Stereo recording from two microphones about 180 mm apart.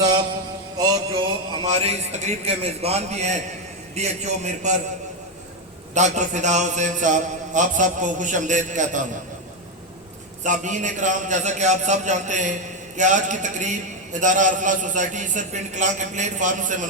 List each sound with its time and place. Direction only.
0.8 s music: 20° right (ahead or behind)
1.7 s a man's voice: 35° right (ahead or behind)
5.9 s a man's voice: 40° right (ahead or behind)
10.4 s a man's voice: 45° right (ahead or behind)